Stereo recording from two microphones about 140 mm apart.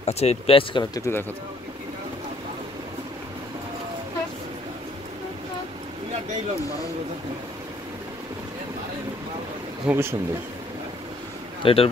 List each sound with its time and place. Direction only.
0.0 s speech: 50° left (ahead or behind)
0.9 s speech: 20° left (ahead or behind)
9.8 s speech: 15° right (ahead or behind)
11.6 s speech: 40° left (ahead or behind)